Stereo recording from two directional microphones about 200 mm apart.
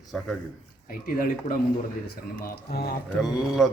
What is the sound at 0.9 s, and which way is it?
Speech, 45° left (ahead or behind).